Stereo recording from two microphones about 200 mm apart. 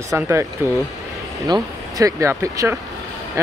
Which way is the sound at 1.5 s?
15° right (ahead or behind).